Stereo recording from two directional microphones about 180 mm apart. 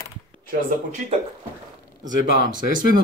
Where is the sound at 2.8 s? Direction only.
55° left (ahead or behind).